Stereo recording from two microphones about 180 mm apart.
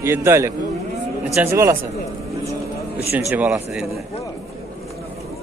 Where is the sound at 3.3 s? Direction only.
10° right (ahead or behind).